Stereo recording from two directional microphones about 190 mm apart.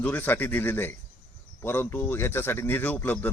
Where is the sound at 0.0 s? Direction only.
10° left (ahead or behind).